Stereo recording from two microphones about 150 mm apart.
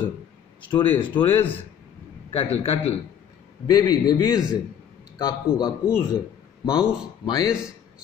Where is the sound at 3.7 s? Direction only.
25° left (ahead or behind).